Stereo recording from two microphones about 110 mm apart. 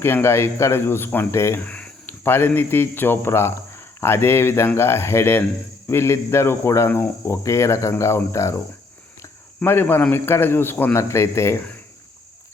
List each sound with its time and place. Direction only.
0.0 s speech: 20° left (ahead or behind)
1.6 s speech: 15° left (ahead or behind)
9.6 s speech: 20° left (ahead or behind)